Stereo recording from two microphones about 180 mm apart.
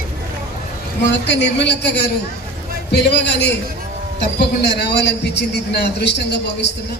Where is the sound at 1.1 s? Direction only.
75° left (ahead or behind).